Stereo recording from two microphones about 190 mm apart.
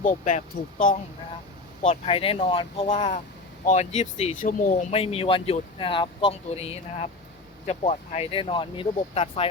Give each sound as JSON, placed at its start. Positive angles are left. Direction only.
{"t": 0.0, "sound": "speech", "side_deg": 40}